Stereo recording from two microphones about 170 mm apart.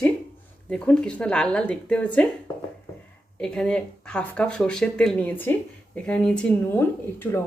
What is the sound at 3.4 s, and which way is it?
A woman's voice, 5° left (ahead or behind).